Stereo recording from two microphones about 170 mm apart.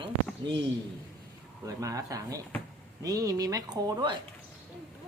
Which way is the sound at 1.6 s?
20° right (ahead or behind).